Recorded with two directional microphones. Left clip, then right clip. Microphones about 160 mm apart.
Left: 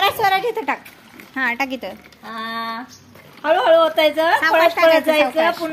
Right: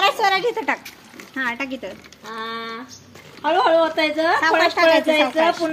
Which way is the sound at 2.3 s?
90° left.